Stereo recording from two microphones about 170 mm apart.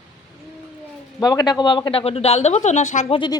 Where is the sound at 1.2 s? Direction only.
20° left (ahead or behind); by 3.2 s 45° left (ahead or behind).